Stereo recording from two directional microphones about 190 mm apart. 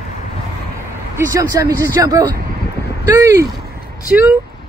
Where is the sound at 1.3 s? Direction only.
15° right (ahead or behind).